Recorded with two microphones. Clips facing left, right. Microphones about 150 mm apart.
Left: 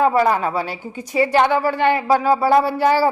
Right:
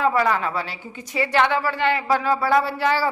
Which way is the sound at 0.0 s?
40° left (ahead or behind).